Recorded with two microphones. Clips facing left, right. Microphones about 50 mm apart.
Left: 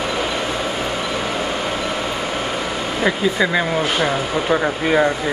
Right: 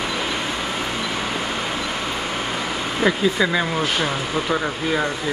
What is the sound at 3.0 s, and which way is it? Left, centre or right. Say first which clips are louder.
Speech: left 1 dB; centre.